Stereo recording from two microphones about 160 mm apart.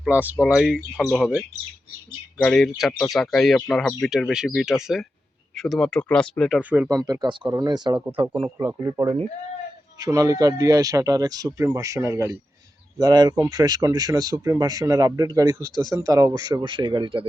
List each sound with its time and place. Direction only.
0.0 s speech: 10° right (ahead or behind)
2.4 s speech: 5° left (ahead or behind)
6.6 s speech: 10° right (ahead or behind); by 8.0 s 30° right (ahead or behind)
8.4 s speech: 15° right (ahead or behind)